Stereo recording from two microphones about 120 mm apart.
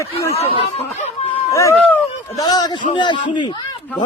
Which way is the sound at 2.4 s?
35° left (ahead or behind).